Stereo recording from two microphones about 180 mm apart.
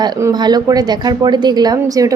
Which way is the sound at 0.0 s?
20° right (ahead or behind).